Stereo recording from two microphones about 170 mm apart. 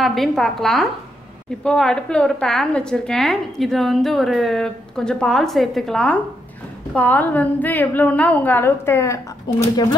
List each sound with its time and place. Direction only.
0.0 s a woman's voice: centre (ahead or behind)
9.5 s speech: 25° left (ahead or behind)